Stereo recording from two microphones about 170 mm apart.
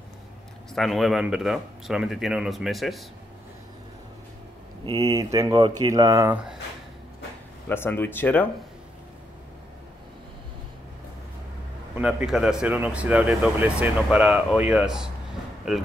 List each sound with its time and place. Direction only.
0.7 s speech: centre (ahead or behind)
4.8 s speech: 20° right (ahead or behind)
7.6 s speech: 10° left (ahead or behind)
11.9 s speech: 10° right (ahead or behind)